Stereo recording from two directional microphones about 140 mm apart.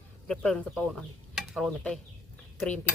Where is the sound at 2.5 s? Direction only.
5° left (ahead or behind).